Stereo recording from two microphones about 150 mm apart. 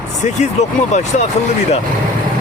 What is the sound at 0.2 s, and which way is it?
Speech, 50° left (ahead or behind).